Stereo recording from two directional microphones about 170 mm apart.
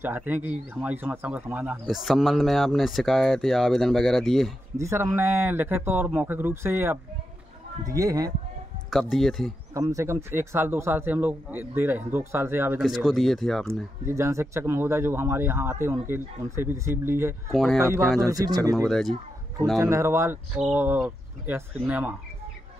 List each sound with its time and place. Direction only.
0.0 s speech: 10° right (ahead or behind)
4.7 s speech: 15° right (ahead or behind)
8.9 s speech: centre (ahead or behind)
9.8 s speech: 20° right (ahead or behind)
12.8 s speech: centre (ahead or behind)
13.7 s speech: 15° right (ahead or behind)
17.5 s speech: centre (ahead or behind)
17.7 s speech: 15° right (ahead or behind)
18.9 s speech: centre (ahead or behind)
19.8 s speech: 15° right (ahead or behind)